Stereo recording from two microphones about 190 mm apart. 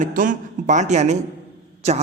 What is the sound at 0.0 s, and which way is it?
A woman's voice, 45° right (ahead or behind).